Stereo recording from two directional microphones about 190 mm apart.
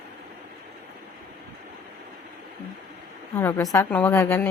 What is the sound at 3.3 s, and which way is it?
Speech, 15° left (ahead or behind).